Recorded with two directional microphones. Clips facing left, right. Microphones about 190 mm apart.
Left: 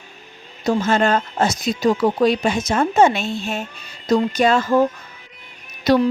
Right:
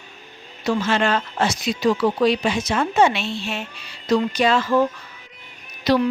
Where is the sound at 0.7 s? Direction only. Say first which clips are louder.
Left 3 dB; 45° left (ahead or behind).